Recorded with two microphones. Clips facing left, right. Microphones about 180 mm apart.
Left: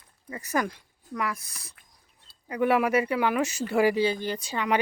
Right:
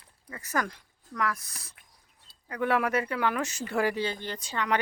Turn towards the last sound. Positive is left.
turn(degrees=10)  # may be behind; listen again after turning